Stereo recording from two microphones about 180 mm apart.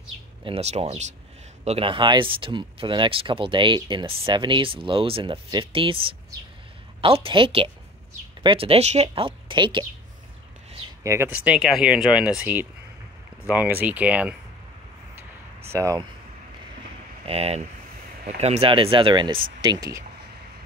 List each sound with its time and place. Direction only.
0.4 s speech: 35° right (ahead or behind)
7.0 s speech: 30° right (ahead or behind)
11.1 s speech: 10° right (ahead or behind)
15.7 s speech: 15° right (ahead or behind)
17.3 s speech: 35° right (ahead or behind); by 20.1 s 20° right (ahead or behind)